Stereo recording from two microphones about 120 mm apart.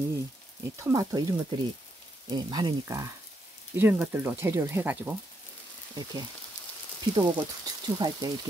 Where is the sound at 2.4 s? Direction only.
35° right (ahead or behind); by 5.1 s 10° right (ahead or behind).